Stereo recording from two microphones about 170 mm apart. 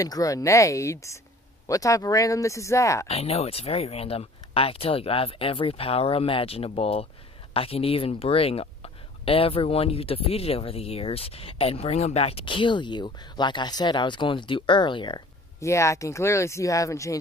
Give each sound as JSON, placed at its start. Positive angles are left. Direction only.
{"t": 0.0, "sound": "speech", "side_deg": 20}
{"t": 3.1, "sound": "speech", "side_deg": 35}